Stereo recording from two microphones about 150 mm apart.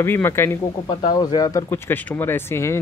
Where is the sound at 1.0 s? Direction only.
25° left (ahead or behind).